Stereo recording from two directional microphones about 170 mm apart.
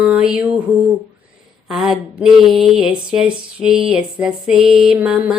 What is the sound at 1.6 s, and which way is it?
Music, centre (ahead or behind).